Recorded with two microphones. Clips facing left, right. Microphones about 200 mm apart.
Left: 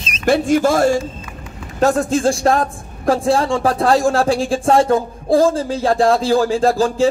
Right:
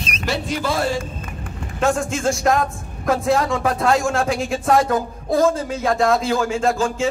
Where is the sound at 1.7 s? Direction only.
35° left (ahead or behind).